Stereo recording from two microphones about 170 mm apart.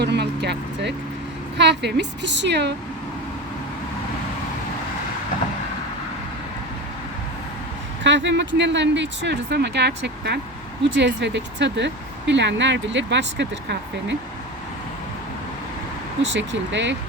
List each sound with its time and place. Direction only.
0.0 s speech: 80° right
8.0 s speech: 90° right
10.8 s speech: 90° right
16.3 s speech: 90° right